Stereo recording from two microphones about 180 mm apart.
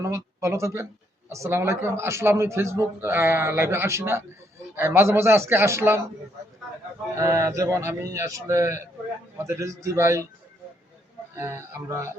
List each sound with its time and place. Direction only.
0.0 s a man's voice: 15° right (ahead or behind)
7.2 s a man's voice: 15° right (ahead or behind)
11.3 s a man's voice: 15° right (ahead or behind)